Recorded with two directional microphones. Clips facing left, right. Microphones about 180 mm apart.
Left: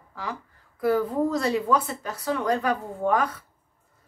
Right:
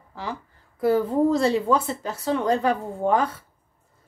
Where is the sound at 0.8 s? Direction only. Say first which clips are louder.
Right 3 dB; 25° right (ahead or behind).